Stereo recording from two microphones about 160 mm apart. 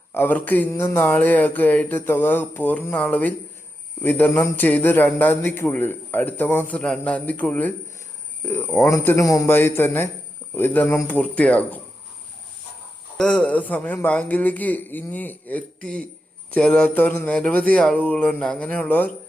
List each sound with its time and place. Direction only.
0.1 s a man's voice: 10° left (ahead or behind)
13.1 s a man's voice: 5° left (ahead or behind)